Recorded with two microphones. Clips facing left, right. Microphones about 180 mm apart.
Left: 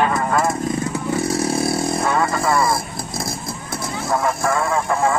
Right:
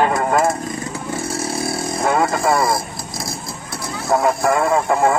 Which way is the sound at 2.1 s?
25° right (ahead or behind).